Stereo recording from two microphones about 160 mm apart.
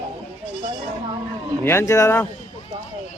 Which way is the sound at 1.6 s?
15° left (ahead or behind).